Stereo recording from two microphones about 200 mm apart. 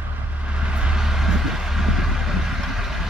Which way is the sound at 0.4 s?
5° right (ahead or behind).